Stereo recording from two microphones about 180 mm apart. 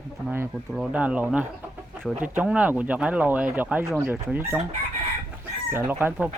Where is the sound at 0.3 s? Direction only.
5° right (ahead or behind).